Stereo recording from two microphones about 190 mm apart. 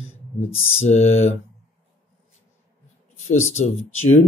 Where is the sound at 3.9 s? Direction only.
90° left.